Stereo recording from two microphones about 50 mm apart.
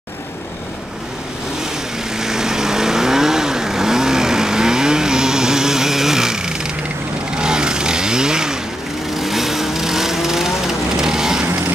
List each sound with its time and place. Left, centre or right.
2.1 s vehicle: centre
7.3 s chainsaw: centre
9.1 s vehicle: centre